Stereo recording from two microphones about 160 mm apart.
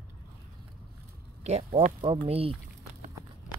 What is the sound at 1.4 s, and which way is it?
Speech, 40° right (ahead or behind).